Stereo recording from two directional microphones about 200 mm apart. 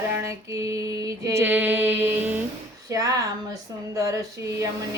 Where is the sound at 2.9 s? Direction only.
15° right (ahead or behind).